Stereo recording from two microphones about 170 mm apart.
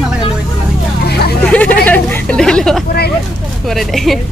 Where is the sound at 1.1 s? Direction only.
70° left (ahead or behind).